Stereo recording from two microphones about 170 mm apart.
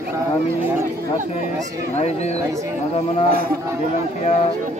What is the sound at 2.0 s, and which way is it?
Speech, 40° left (ahead or behind).